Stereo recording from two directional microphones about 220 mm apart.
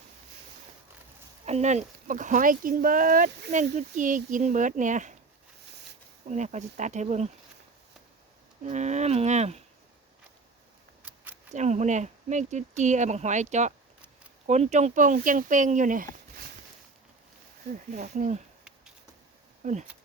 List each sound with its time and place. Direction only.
1.5 s speech: 30° right (ahead or behind)
6.2 s speech: 30° right (ahead or behind)
8.6 s speech: 30° right (ahead or behind)
11.5 s speech: 30° right (ahead or behind)
17.9 s speech: 35° right (ahead or behind)
19.6 s speech: 30° right (ahead or behind)